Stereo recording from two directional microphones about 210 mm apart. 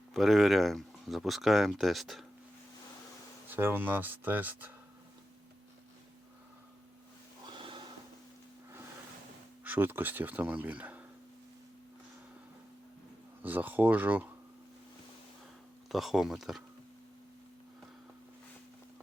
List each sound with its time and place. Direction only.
0.1 s speech: centre (ahead or behind)
3.5 s speech: 10° right (ahead or behind)
9.6 s speech: 10° right (ahead or behind)
13.4 s speech: 10° right (ahead or behind)
15.9 s speech: centre (ahead or behind)